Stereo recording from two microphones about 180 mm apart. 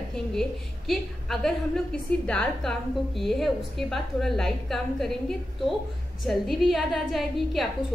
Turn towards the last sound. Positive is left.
turn(degrees=0)  # may be behind; listen again after turning